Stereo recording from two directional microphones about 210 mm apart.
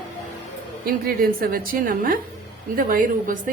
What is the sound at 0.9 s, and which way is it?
A woman's voice, 45° right (ahead or behind).